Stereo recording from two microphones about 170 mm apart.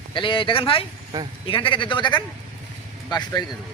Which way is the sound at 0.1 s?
30° left (ahead or behind).